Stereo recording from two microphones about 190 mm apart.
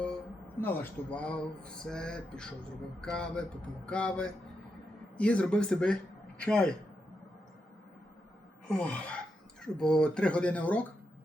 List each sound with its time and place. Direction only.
0.6 s speech: 10° left (ahead or behind)
8.8 s speech: 5° left (ahead or behind)